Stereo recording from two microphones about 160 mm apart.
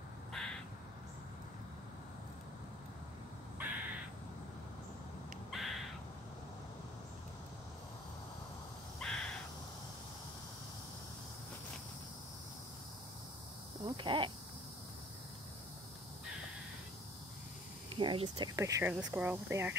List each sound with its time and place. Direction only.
0.4 s crow: centre (ahead or behind)
3.5 s crow: 10° right (ahead or behind)
5.5 s crow: centre (ahead or behind)
9.0 s crow: 5° left (ahead or behind)
13.8 s a sound: 30° right (ahead or behind)
17.9 s speech: 35° right (ahead or behind); by 19.7 s 15° right (ahead or behind)